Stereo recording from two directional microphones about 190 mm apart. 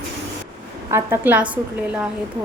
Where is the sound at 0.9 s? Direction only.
10° right (ahead or behind).